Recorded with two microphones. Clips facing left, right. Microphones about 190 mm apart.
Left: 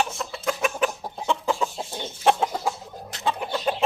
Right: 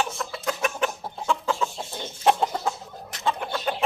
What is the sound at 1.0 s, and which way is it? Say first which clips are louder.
Chicken: left 1 dB; 15° left (ahead or behind).